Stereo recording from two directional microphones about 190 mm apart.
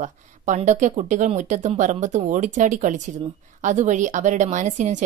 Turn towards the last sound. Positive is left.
turn(degrees=-40)  # may be behind; listen again after turning